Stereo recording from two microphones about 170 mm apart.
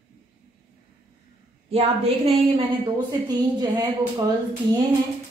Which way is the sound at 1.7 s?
30° right (ahead or behind).